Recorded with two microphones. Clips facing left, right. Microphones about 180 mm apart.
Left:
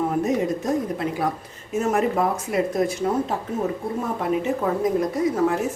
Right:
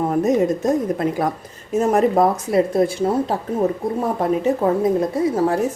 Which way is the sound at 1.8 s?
35° right (ahead or behind).